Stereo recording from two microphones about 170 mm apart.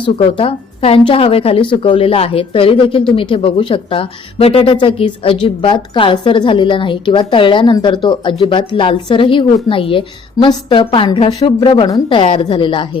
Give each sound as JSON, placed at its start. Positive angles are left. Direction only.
{"t": 0.0, "sound": "a woman's voice", "side_deg": 30}